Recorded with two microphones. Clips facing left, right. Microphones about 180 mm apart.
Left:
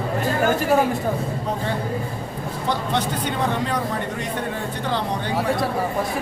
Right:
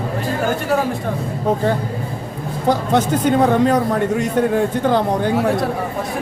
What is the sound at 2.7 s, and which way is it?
Speech, 45° right (ahead or behind).